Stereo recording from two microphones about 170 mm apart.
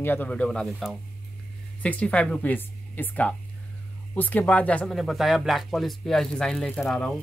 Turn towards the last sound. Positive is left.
turn(degrees=0)  # may be behind; listen again after turning